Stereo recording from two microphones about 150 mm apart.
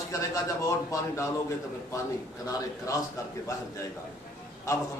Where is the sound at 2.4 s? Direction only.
25° left (ahead or behind).